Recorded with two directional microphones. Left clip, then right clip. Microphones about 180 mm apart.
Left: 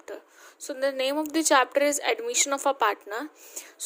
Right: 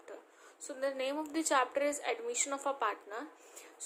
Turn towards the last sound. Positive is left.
turn(degrees=50)  # may be behind; listen again after turning